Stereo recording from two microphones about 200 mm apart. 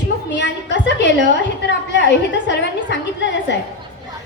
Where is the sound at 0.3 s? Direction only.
60° left (ahead or behind).